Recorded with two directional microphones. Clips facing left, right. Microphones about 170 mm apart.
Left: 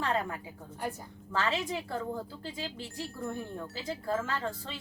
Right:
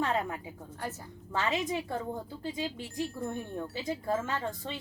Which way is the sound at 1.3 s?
20° right (ahead or behind).